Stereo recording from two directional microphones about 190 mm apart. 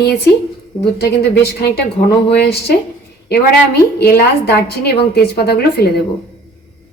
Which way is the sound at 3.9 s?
55° left (ahead or behind).